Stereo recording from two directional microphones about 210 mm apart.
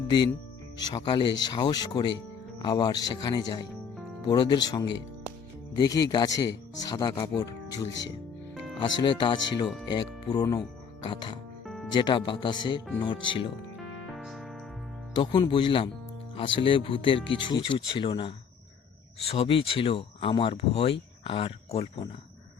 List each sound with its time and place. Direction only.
0.9 s speech: 20° left (ahead or behind)
8.8 s speech: 20° left (ahead or behind)
11.6 s music: centre (ahead or behind)
11.9 s speech: 20° left (ahead or behind)
14.1 s music: centre (ahead or behind)
15.1 s speech: 20° left (ahead or behind)